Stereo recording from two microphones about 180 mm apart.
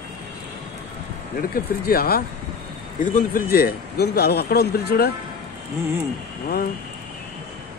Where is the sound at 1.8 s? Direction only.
55° left (ahead or behind).